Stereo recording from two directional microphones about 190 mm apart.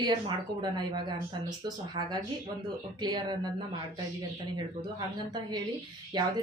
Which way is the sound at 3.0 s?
20° right (ahead or behind).